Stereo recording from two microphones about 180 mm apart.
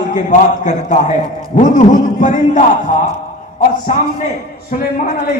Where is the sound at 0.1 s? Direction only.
45° left (ahead or behind).